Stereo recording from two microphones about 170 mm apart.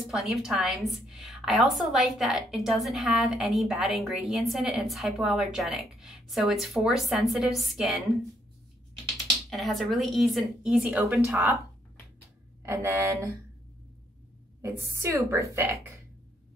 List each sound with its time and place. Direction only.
0.0 s a woman's voice: centre (ahead or behind)
9.5 s a woman's voice: centre (ahead or behind)
12.6 s a woman's voice: 15° right (ahead or behind)
14.6 s a woman's voice: 15° right (ahead or behind)